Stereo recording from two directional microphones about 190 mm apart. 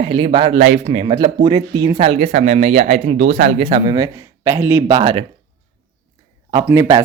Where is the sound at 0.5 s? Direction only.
50° right (ahead or behind).